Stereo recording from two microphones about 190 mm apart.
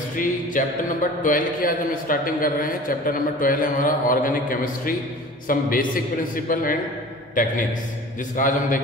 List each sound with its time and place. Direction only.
0.2 s a man's voice: 45° left (ahead or behind)